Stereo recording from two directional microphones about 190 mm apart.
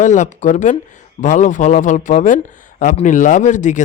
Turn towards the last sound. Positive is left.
turn(degrees=40)  # may be behind; listen again after turning